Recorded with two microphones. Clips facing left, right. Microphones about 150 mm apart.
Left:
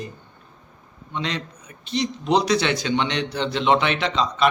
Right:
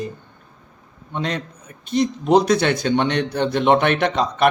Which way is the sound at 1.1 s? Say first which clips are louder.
Right 3 dB; 50° right (ahead or behind).